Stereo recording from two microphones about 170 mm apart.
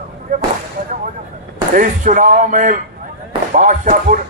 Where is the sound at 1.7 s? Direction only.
50° right (ahead or behind).